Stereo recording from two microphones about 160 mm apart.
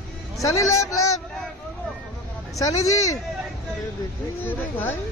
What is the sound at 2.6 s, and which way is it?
Speech, 20° left (ahead or behind).